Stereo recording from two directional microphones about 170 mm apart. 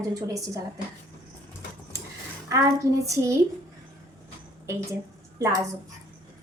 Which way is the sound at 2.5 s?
20° right (ahead or behind).